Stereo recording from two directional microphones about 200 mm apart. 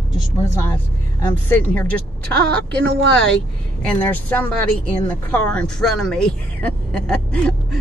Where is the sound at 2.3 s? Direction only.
55° right (ahead or behind).